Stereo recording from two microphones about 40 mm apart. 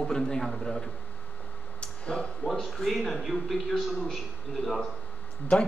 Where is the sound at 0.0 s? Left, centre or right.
Centre.